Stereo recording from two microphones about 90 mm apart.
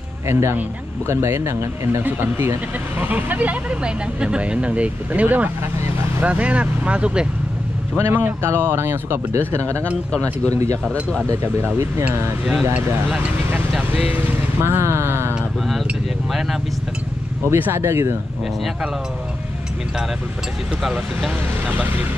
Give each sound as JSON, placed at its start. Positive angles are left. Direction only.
{"t": 0.3, "sound": "speech", "side_deg": -30}
{"t": 5.8, "sound": "vehicle", "side_deg": -30}
{"t": 6.2, "sound": "speech", "side_deg": -15}
{"t": 10.9, "sound": "speech", "side_deg": 10}
{"t": 11.2, "sound": "speech", "side_deg": -25}
{"t": 13.5, "sound": "vehicle", "side_deg": -15}
{"t": 14.1, "sound": "speech", "side_deg": -30}
{"t": 17.5, "sound": "speech", "side_deg": -25}